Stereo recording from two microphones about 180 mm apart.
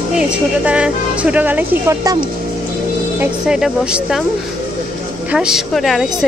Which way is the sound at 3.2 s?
5° right (ahead or behind).